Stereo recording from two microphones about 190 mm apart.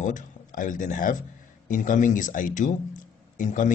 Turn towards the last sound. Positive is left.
turn(degrees=40)  # may be behind; listen again after turning